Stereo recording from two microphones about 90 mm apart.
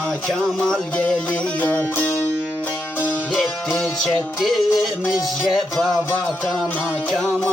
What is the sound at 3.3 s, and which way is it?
Music, 10° left (ahead or behind).